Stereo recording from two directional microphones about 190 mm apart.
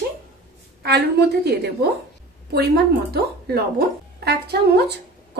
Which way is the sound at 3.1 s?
55° right (ahead or behind).